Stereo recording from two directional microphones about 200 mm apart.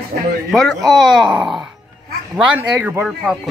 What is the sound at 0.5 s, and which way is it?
Speech, centre (ahead or behind).